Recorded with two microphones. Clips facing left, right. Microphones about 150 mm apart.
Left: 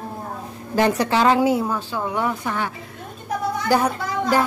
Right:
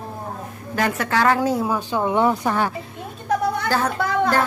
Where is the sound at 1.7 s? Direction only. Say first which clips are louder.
Right 4 dB; 15° right (ahead or behind).